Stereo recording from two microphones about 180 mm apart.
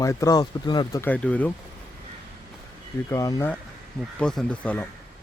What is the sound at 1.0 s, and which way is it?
Speech, 10° left (ahead or behind).